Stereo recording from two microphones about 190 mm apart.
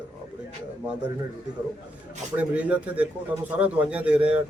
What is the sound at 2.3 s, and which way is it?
A man's voice, 5° right (ahead or behind).